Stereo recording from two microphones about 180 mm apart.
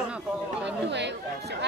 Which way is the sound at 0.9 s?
75° right (ahead or behind).